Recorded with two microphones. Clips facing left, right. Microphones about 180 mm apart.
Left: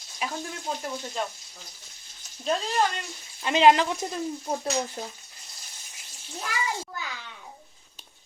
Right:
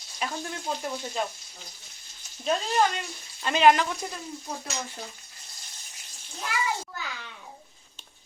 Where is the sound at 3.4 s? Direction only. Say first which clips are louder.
Left 1 dB; 25° left (ahead or behind).